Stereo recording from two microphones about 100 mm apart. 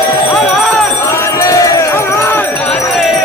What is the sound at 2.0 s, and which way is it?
Music, 20° left (ahead or behind).